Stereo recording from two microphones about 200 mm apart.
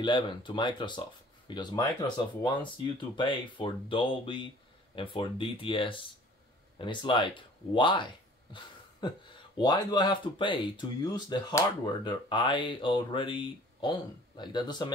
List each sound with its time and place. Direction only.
0.0 s speech: 20° left (ahead or behind)